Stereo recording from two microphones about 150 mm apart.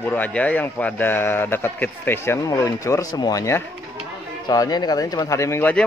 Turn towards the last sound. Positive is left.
turn(degrees=15)  # may be behind; listen again after turning